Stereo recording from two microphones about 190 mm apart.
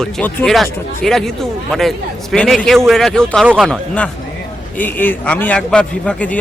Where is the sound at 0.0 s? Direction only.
10° left (ahead or behind).